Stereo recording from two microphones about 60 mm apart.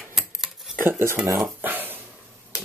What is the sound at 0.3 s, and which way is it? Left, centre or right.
Cutlery, centre.